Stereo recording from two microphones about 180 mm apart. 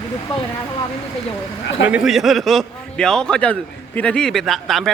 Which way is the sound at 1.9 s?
5° right (ahead or behind).